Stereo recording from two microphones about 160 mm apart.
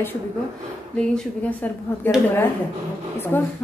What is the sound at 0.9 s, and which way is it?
Speech, 5° left (ahead or behind).